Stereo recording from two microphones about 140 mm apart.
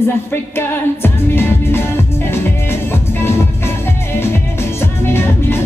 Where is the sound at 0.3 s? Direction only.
15° left (ahead or behind).